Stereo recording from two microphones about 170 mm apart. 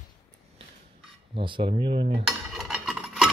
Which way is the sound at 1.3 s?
30° right (ahead or behind).